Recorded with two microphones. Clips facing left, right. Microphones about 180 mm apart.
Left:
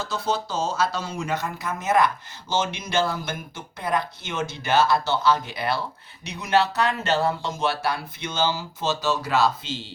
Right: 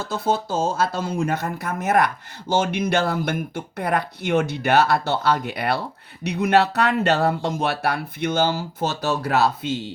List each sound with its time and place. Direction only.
0.0 s speech: 55° right (ahead or behind)